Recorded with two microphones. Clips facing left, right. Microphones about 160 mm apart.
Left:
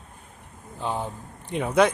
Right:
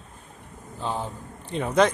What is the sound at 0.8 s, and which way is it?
Speech, 15° left (ahead or behind).